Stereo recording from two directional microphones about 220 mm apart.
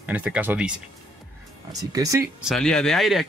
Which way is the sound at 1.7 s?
15° right (ahead or behind).